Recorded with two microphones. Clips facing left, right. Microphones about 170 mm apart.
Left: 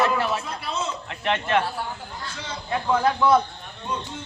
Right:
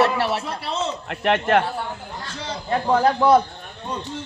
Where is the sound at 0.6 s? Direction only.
65° right (ahead or behind).